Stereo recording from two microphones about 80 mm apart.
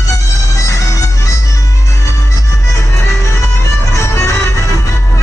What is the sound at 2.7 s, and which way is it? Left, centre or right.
Music, left.